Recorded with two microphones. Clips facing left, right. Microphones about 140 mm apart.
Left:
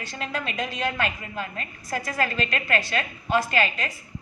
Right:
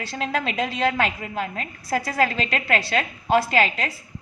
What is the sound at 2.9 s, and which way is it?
Speech, 90° right.